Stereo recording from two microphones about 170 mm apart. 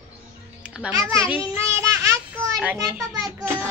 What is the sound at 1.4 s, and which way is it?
Child singing, 15° right (ahead or behind).